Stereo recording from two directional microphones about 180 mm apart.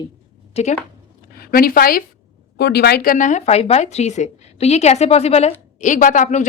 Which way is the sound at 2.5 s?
65° left (ahead or behind).